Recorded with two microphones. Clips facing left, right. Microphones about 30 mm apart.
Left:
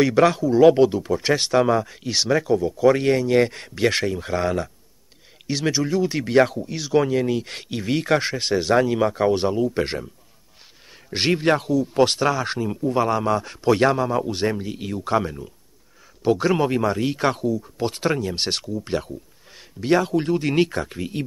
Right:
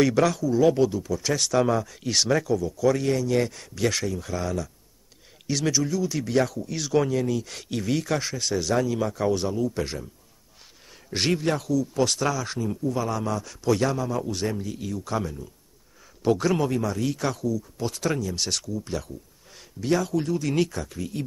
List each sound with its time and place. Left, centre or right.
0.2 s speech: left
2.0 s speech: centre
2.4 s speech: left
5.5 s speech: left
6.7 s speech: centre; by 10.0 s left
11.1 s speech: left
11.4 s speech: left